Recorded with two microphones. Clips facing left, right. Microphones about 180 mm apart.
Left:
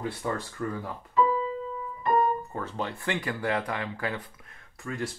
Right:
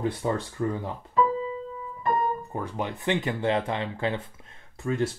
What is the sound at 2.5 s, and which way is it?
Speech, 15° right (ahead or behind).